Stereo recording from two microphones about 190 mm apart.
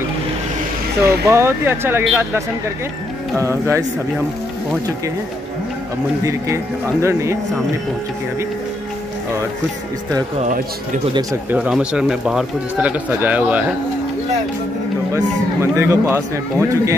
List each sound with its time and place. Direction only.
1.0 s speech: 15° right (ahead or behind)
6.2 s speech: 15° right (ahead or behind)
11.5 s speech: 5° right (ahead or behind)
15.6 s speech: 15° right (ahead or behind)